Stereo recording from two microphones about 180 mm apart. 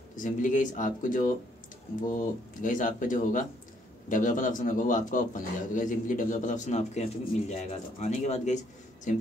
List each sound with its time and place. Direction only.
0.2 s a man's voice: 45° left (ahead or behind)